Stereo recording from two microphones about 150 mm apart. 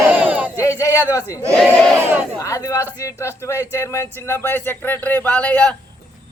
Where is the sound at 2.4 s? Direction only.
20° left (ahead or behind).